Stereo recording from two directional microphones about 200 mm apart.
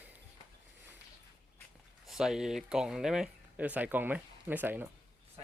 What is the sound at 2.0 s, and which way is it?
Speech, centre (ahead or behind).